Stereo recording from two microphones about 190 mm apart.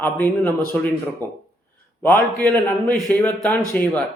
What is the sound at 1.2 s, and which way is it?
Speech, 20° right (ahead or behind).